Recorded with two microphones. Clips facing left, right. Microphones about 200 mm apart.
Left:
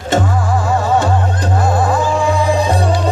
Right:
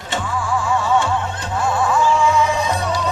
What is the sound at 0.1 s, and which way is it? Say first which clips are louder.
Music: left 6 dB; 40° left (ahead or behind).